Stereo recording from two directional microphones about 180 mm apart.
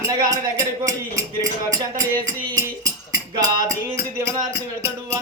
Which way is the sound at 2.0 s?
20° right (ahead or behind).